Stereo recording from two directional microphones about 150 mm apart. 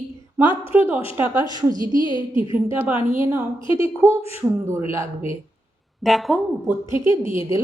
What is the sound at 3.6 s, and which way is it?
Speech, 35° left (ahead or behind).